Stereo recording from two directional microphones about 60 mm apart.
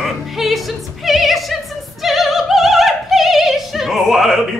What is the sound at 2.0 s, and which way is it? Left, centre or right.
Opera, centre.